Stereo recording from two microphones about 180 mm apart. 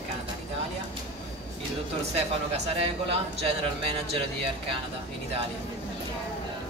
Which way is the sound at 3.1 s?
35° right (ahead or behind).